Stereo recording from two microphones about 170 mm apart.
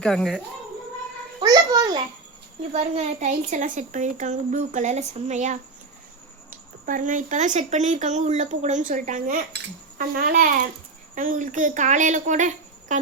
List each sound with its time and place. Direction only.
0.0 s speech: 5° left (ahead or behind)
1.4 s a sound: 20° right (ahead or behind)
2.7 s a woman's voice: 40° right (ahead or behind)
6.8 s a woman's voice: 50° right (ahead or behind)